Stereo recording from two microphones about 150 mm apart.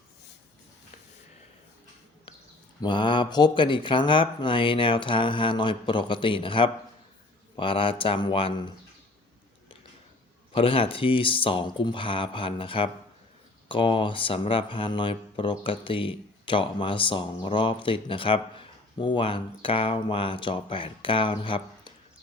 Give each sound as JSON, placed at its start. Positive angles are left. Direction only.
{"t": 2.8, "sound": "speech", "side_deg": 30}
{"t": 10.5, "sound": "speech", "side_deg": 35}